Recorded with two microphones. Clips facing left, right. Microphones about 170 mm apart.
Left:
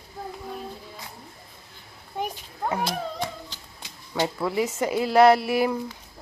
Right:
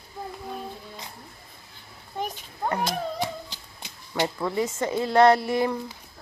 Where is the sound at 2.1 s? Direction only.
5° left (ahead or behind).